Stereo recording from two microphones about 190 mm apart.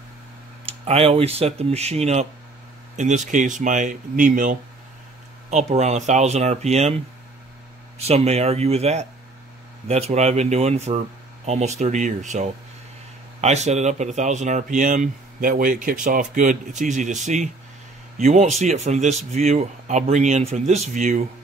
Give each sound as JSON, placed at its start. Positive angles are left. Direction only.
{"t": 0.8, "sound": "speech", "side_deg": -30}
{"t": 8.0, "sound": "speech", "side_deg": -35}